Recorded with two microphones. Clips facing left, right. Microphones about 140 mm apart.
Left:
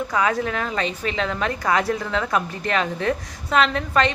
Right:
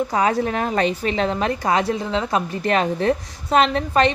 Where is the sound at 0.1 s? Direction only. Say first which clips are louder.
Right 2 dB; 35° right (ahead or behind).